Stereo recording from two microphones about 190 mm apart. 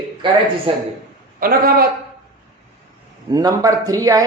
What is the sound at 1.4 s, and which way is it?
Speech, 50° right (ahead or behind).